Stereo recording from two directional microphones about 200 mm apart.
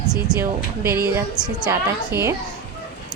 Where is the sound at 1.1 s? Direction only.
10° right (ahead or behind).